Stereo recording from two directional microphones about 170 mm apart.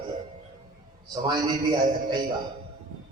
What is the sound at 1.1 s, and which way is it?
A man's voice, 25° right (ahead or behind).